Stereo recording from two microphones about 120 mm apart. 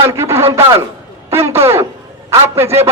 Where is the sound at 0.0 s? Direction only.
20° right (ahead or behind).